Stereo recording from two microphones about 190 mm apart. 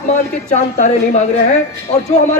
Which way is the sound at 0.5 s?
40° left (ahead or behind).